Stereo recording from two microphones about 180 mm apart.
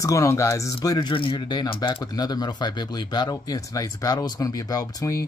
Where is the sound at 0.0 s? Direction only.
15° left (ahead or behind).